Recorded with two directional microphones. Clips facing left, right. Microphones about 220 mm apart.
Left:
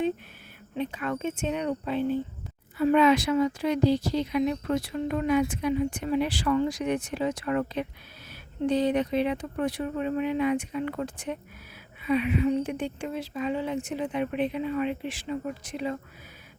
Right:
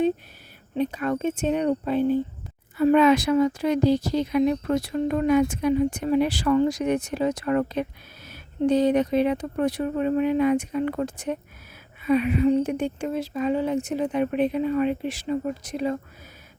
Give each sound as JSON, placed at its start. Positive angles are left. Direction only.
{"t": 0.8, "sound": "a woman's voice", "side_deg": -40}